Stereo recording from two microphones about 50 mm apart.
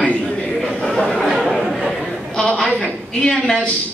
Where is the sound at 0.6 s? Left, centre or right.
Centre.